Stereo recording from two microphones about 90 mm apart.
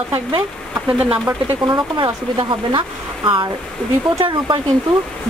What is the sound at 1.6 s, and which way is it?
Speech, 55° right (ahead or behind).